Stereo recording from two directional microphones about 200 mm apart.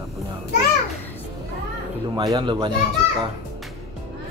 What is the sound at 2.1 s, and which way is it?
Speech, 20° right (ahead or behind).